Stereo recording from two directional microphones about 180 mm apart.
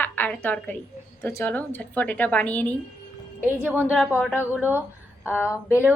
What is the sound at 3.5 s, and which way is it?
A woman's voice, 10° right (ahead or behind).